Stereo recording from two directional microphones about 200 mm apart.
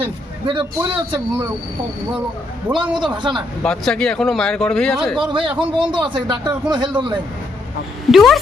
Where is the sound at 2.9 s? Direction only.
25° right (ahead or behind).